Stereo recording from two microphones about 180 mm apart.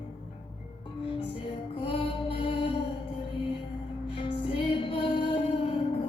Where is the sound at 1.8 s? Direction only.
30° left (ahead or behind).